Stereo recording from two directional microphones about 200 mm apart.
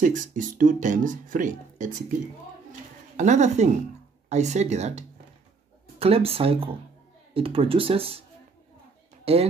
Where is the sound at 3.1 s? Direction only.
35° right (ahead or behind).